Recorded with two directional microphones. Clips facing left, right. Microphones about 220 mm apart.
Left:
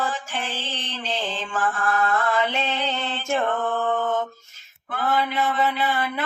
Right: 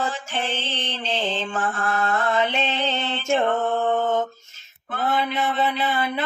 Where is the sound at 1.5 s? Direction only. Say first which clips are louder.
Left 6 dB; 25° right (ahead or behind).